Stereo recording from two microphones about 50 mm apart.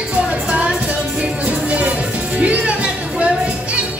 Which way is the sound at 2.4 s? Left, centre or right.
Right.